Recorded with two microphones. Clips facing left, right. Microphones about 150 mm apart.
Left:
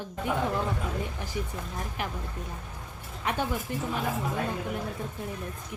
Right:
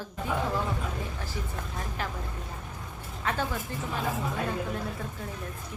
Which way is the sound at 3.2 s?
15° left (ahead or behind).